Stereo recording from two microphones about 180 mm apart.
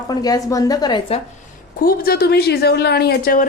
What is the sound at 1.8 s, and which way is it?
Speech, 55° left (ahead or behind).